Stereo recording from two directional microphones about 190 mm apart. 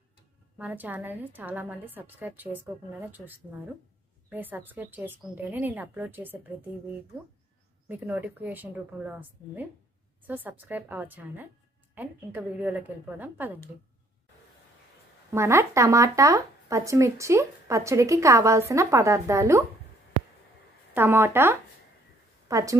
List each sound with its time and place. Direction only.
0.6 s speech: 10° right (ahead or behind)
7.9 s speech: 10° right (ahead or behind)
15.3 s speech: 15° right (ahead or behind)
20.9 s a woman's voice: 10° right (ahead or behind)